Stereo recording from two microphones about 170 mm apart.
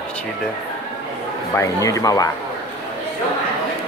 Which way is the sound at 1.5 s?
15° left (ahead or behind).